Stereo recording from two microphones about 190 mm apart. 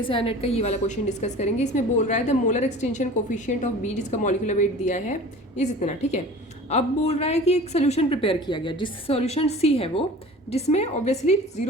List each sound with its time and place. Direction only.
0.0 s a woman's voice: 25° left (ahead or behind)